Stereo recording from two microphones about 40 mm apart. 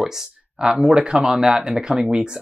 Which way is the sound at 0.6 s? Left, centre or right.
Right.